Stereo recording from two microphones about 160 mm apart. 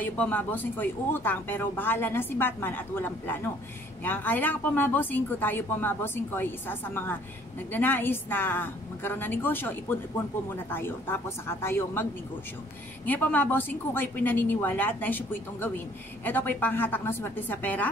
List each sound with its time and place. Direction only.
0.0 s a woman's voice: 10° left (ahead or behind)